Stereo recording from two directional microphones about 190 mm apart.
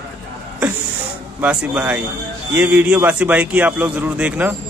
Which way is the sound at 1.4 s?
5° right (ahead or behind).